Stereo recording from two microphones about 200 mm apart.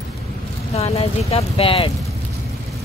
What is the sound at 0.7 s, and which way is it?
Speech, 30° left (ahead or behind).